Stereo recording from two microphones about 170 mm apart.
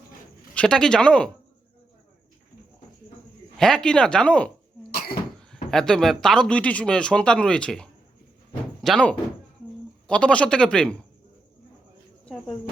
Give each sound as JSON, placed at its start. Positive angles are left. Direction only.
{"t": 0.5, "sound": "speech", "side_deg": 5}
{"t": 3.6, "sound": "speech", "side_deg": 5}
{"t": 4.9, "sound": "cough", "side_deg": 60}
{"t": 5.7, "sound": "speech", "side_deg": 5}
{"t": 12.2, "sound": "cricket", "side_deg": 5}